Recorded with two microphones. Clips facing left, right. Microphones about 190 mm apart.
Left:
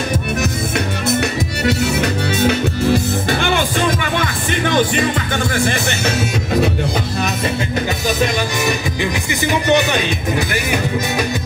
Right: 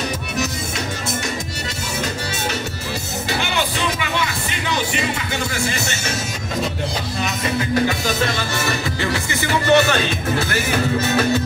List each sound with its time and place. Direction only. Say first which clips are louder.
0.4 s music: left 5 dB; 60° left (ahead or behind)
5.5 s speech: left 6 dB; 55° left (ahead or behind)
8.2 s music: left 4 dB; 15° left (ahead or behind)